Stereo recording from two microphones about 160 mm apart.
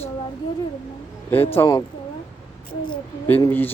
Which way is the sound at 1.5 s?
15° left (ahead or behind).